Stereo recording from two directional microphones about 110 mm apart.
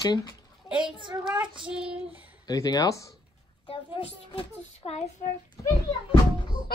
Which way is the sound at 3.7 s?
60° left (ahead or behind).